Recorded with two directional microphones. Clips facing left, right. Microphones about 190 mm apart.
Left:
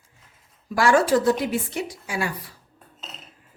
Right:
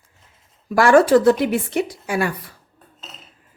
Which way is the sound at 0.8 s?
60° right (ahead or behind).